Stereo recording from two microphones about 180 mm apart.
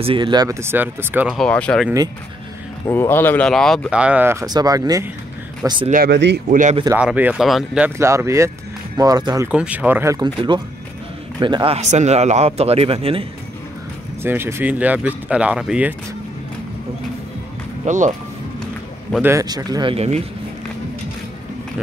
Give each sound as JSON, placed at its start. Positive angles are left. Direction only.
{"t": 0.0, "sound": "speech", "side_deg": -30}
{"t": 2.9, "sound": "speech", "side_deg": 10}
{"t": 6.0, "sound": "speech", "side_deg": -70}
{"t": 6.5, "sound": "speech", "side_deg": -45}
{"t": 7.0, "sound": "speech", "side_deg": -5}
{"t": 9.5, "sound": "a man's voice", "side_deg": -5}
{"t": 14.2, "sound": "speech", "side_deg": -10}
{"t": 17.8, "sound": "speech", "side_deg": -45}
{"t": 19.2, "sound": "speech", "side_deg": -20}